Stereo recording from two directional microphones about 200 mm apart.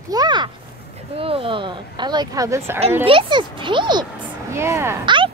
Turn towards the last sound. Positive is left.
turn(degrees=-15)  # may be behind; listen again after turning